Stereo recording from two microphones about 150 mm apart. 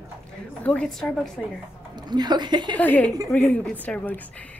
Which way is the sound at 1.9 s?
30° right (ahead or behind).